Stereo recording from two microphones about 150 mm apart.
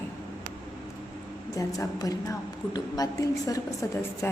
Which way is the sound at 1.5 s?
20° left (ahead or behind).